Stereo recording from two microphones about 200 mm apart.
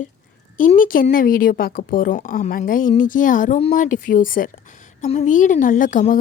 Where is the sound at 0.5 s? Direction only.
40° left (ahead or behind).